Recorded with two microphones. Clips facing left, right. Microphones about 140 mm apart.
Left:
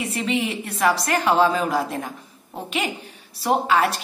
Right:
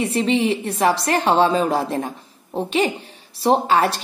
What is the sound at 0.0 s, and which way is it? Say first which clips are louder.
A woman's voice: right 5 dB; 30° right (ahead or behind).